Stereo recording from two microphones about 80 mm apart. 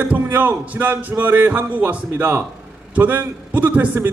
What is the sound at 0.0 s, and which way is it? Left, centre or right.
A man's voice, right.